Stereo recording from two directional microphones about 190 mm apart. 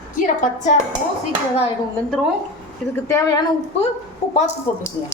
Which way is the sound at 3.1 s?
15° left (ahead or behind).